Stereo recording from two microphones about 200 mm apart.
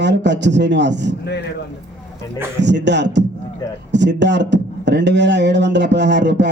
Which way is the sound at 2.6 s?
60° right (ahead or behind).